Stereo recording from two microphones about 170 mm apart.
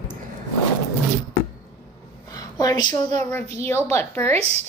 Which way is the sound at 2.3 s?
20° left (ahead or behind).